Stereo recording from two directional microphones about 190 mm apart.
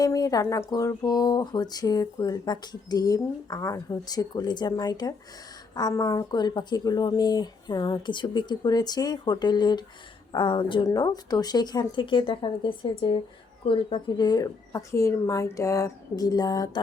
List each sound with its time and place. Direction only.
0.0 s speech: 20° left (ahead or behind)